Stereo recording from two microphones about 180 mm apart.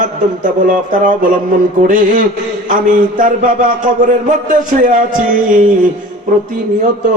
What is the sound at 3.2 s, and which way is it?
A man's voice, 45° right (ahead or behind).